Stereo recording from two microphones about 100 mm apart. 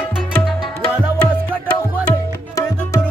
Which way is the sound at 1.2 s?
10° left (ahead or behind).